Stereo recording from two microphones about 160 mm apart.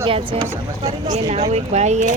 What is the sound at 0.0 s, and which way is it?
Speech, 35° right (ahead or behind).